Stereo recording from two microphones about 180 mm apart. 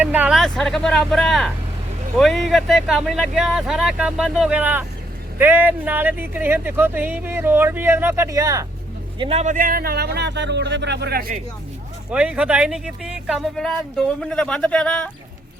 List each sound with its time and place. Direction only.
0.0 s speech: 10° right (ahead or behind)
9.1 s speech: 30° right (ahead or behind); by 11.3 s 55° right (ahead or behind)
12.1 s speech: 5° right (ahead or behind)